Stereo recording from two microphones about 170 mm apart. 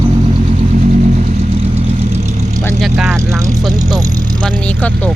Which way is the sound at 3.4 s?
20° right (ahead or behind).